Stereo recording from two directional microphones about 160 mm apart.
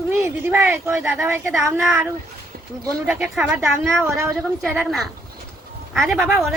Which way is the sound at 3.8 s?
15° right (ahead or behind).